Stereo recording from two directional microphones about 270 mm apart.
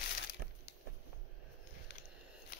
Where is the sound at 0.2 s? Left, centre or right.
Left.